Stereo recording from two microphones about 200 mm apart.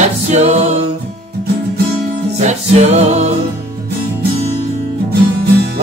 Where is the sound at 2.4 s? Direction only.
35° right (ahead or behind).